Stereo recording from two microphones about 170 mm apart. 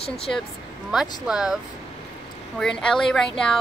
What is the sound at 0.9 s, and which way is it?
Speech, 5° right (ahead or behind).